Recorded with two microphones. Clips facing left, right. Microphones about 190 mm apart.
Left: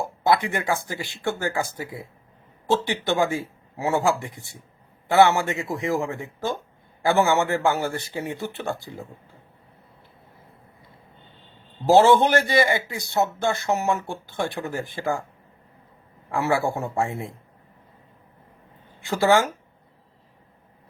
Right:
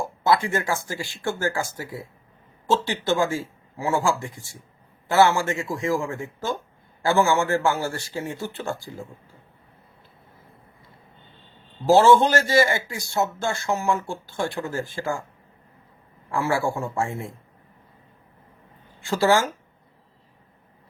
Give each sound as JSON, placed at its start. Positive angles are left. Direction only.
{"t": 0.3, "sound": "speech", "side_deg": 20}
{"t": 2.6, "sound": "a man's voice", "side_deg": 15}
{"t": 11.9, "sound": "speech", "side_deg": 20}
{"t": 16.3, "sound": "speech", "side_deg": 20}
{"t": 18.9, "sound": "speech", "side_deg": 20}